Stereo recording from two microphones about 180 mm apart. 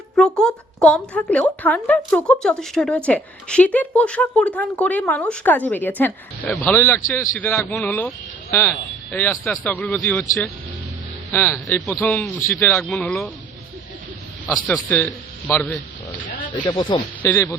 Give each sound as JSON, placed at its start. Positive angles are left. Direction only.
{"t": 0.2, "sound": "a woman's voice", "side_deg": 5}
{"t": 14.4, "sound": "a woman's voice", "side_deg": 10}
{"t": 16.6, "sound": "speech", "side_deg": 25}
{"t": 17.2, "sound": "a woman's voice", "side_deg": 10}